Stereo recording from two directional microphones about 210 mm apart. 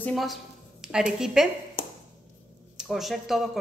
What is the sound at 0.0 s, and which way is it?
A woman's voice, centre (ahead or behind).